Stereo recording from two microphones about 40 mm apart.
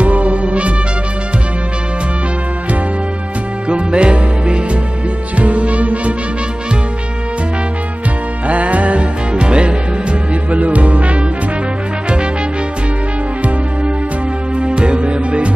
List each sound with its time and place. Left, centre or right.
0.0 s music: right
3.6 s music: right
8.5 s music: right
14.6 s music: right